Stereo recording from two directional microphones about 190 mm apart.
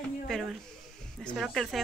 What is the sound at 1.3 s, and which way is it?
Speech, centre (ahead or behind).